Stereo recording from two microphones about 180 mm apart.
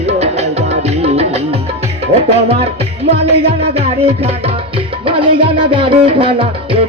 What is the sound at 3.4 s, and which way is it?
Music, 35° right (ahead or behind).